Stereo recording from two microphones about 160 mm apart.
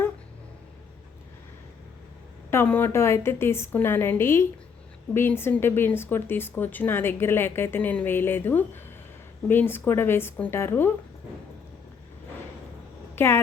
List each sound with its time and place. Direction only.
2.5 s speech: 15° left (ahead or behind)
13.1 s speech: 15° left (ahead or behind)